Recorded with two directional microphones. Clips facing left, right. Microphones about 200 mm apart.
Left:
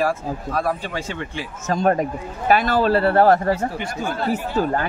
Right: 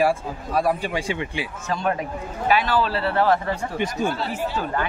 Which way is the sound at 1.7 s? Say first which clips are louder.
Left 7 dB; 45° left (ahead or behind).